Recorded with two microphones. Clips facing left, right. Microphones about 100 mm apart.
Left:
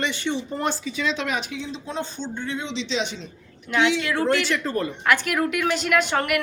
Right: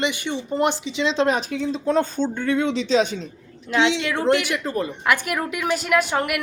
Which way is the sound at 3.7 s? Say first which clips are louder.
Right 1 dB; 25° right (ahead or behind).